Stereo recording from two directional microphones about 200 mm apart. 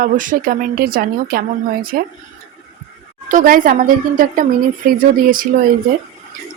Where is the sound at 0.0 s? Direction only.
40° right (ahead or behind).